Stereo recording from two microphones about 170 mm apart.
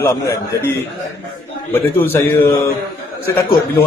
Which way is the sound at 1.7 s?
15° left (ahead or behind).